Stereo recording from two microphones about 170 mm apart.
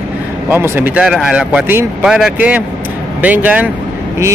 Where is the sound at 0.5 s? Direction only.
10° right (ahead or behind).